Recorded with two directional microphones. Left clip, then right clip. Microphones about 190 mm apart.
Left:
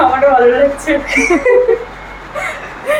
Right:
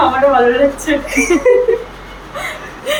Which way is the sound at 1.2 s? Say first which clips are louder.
Left 2 dB; 35° left (ahead or behind).